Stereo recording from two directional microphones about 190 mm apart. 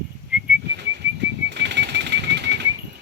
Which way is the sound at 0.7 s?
65° right (ahead or behind).